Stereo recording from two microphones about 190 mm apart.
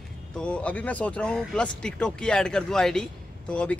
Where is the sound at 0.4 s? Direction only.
5° left (ahead or behind).